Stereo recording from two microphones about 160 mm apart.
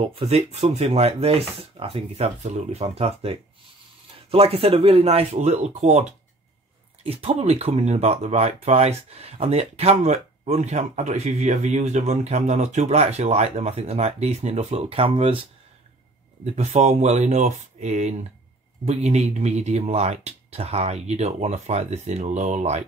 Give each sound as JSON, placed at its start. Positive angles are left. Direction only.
{"t": 0.1, "sound": "speech", "side_deg": -40}
{"t": 16.4, "sound": "speech", "side_deg": -45}